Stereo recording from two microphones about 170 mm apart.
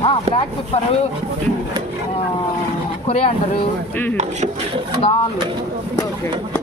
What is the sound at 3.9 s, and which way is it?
Speech, 10° left (ahead or behind).